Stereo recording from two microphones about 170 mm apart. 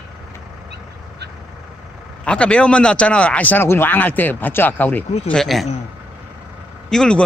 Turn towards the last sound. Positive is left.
turn(degrees=5)  # may be behind; listen again after turning